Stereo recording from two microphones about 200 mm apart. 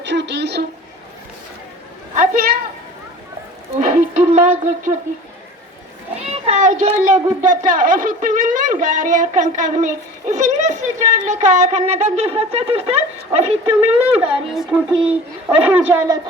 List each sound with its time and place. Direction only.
0.0 s a sound: 60° right (ahead or behind)
2.1 s a woman's voice: 45° right (ahead or behind)
3.8 s speech: 35° right (ahead or behind)
6.4 s speech: 35° right (ahead or behind)
13.7 s a woman's voice: 5° right (ahead or behind)